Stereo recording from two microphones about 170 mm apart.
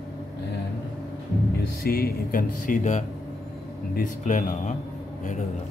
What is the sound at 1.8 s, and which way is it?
Speech, 60° left (ahead or behind).